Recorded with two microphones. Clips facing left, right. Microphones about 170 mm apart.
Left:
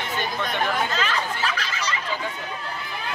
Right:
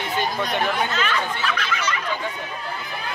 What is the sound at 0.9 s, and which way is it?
Speech, 35° left (ahead or behind).